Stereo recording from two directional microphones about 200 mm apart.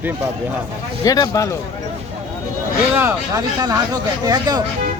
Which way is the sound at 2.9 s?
15° right (ahead or behind).